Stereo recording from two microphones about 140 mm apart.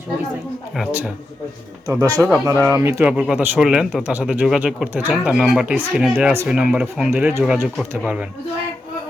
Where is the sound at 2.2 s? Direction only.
10° right (ahead or behind).